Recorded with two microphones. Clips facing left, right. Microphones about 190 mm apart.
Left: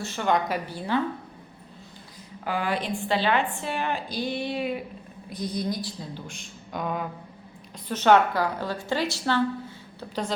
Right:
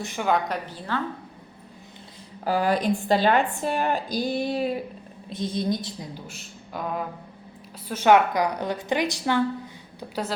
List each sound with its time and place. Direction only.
0.0 s a woman's voice: 15° right (ahead or behind)
0.3 s a woman's voice: centre (ahead or behind)
2.4 s a woman's voice: 40° right (ahead or behind)
5.3 s a woman's voice: 25° right (ahead or behind)
6.1 s a woman's voice: 5° right (ahead or behind)